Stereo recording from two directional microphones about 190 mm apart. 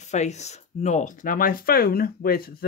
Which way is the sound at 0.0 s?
35° left (ahead or behind).